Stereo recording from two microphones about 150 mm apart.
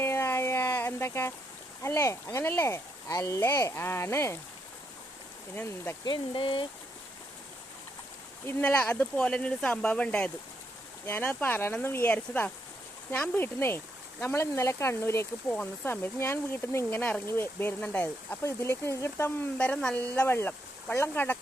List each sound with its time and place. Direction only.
0.0 s a sound: 15° left (ahead or behind)
1.8 s speech: 20° left (ahead or behind)
5.5 s speech: 15° left (ahead or behind)
6.1 s speech: 35° left (ahead or behind)
8.4 s speech: 10° left (ahead or behind)